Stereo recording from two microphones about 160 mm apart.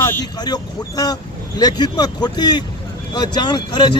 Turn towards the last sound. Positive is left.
turn(degrees=30)  # may be behind; listen again after turning